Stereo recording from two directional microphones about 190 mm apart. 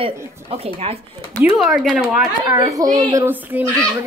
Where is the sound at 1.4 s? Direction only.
Centre (ahead or behind).